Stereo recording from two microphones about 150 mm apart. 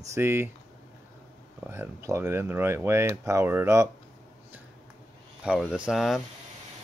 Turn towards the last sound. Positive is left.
turn(degrees=0)  # may be behind; listen again after turning